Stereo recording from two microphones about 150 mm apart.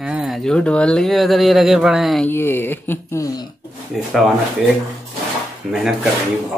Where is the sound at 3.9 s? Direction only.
Centre (ahead or behind).